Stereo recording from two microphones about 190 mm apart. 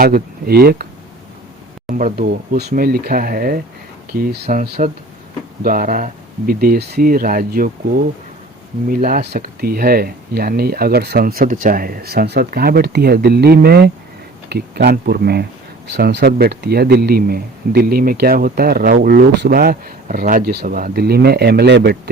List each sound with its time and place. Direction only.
0.0 s speech: 55° right (ahead or behind)
1.9 s speech: 45° right (ahead or behind); by 22.1 s 60° right (ahead or behind)